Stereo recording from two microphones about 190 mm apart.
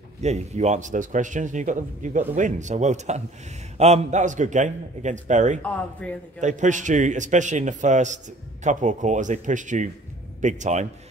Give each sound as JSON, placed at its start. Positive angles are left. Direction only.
{"t": 0.2, "sound": "speech", "side_deg": -35}
{"t": 5.6, "sound": "a man's voice", "side_deg": 5}
{"t": 6.4, "sound": "speech", "side_deg": -40}